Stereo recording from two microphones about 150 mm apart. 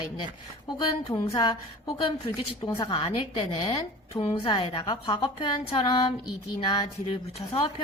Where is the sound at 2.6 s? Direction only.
25° left (ahead or behind).